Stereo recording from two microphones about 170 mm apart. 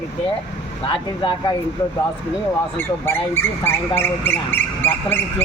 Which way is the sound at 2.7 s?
15° left (ahead or behind).